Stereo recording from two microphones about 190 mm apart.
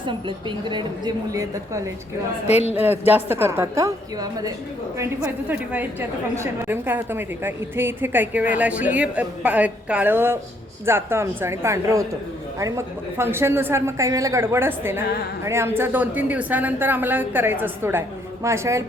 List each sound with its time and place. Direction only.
0.0 s a woman's voice: 25° right (ahead or behind)
2.5 s speech: 35° left (ahead or behind)
2.7 s a woman's voice: 10° right (ahead or behind)